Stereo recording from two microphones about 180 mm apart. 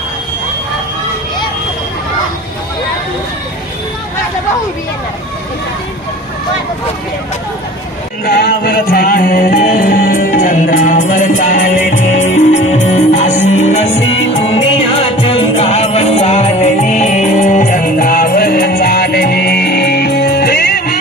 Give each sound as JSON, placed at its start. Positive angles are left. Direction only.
{"t": 8.3, "sound": "music", "side_deg": 60}